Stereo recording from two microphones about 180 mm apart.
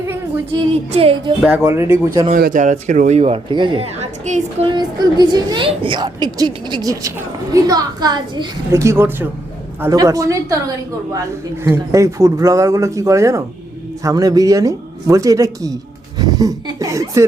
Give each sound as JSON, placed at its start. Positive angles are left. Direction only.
{"t": 0.9, "sound": "a man's voice", "side_deg": -30}
{"t": 1.5, "sound": "speech", "side_deg": -10}
{"t": 2.3, "sound": "a man's voice", "side_deg": -50}
{"t": 4.6, "sound": "speech", "side_deg": -25}
{"t": 11.6, "sound": "speech", "side_deg": -15}